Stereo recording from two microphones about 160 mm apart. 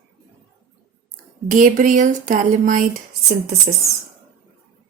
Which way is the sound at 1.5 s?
55° right (ahead or behind).